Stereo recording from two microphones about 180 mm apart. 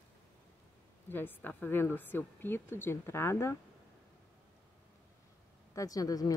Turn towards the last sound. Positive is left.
turn(degrees=20)  # may be behind; listen again after turning